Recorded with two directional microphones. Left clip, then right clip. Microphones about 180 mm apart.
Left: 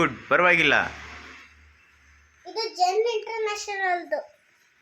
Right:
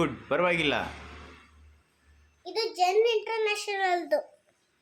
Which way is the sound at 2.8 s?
30° right (ahead or behind).